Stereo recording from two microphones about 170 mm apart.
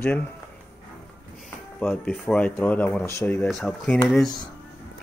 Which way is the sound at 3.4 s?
Centre (ahead or behind).